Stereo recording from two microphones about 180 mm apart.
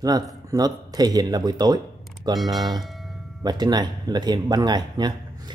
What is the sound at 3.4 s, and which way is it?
Speech, 20° right (ahead or behind).